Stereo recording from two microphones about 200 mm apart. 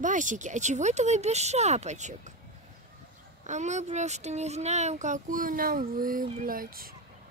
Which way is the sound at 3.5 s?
35° right (ahead or behind).